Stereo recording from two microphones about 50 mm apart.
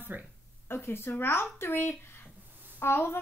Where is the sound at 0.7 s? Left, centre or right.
Left.